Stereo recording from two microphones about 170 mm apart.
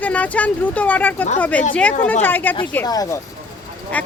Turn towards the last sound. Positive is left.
turn(degrees=10)  # may be behind; listen again after turning